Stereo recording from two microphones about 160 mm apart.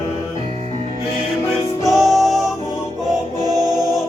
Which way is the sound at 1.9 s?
Centre (ahead or behind).